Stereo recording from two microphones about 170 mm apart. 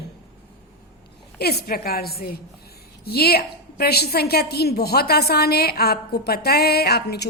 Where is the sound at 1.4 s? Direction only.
70° left (ahead or behind).